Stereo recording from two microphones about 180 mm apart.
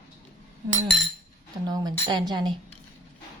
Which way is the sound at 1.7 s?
20° right (ahead or behind).